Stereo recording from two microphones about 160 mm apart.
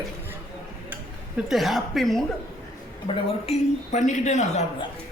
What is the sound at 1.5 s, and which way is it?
Speech, centre (ahead or behind).